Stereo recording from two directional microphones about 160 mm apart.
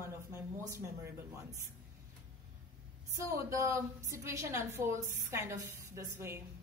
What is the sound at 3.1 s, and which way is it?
A woman's voice, 20° right (ahead or behind).